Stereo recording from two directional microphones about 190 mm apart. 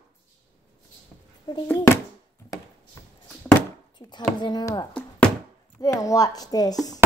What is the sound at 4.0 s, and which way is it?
Speech, 25° left (ahead or behind).